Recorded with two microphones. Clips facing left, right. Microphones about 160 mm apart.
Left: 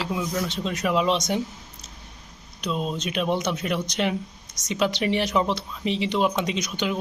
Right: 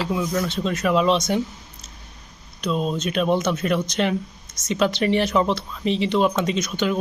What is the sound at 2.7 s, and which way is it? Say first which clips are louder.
Speech: right 4 dB; 35° right (ahead or behind).